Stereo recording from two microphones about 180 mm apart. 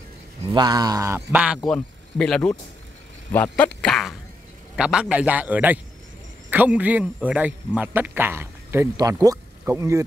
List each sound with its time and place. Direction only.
0.5 s a sound: 20° right (ahead or behind)
1.3 s a man's voice: 5° right (ahead or behind)
1.7 s a man's voice: 5° left (ahead or behind); by 10.0 s 15° right (ahead or behind)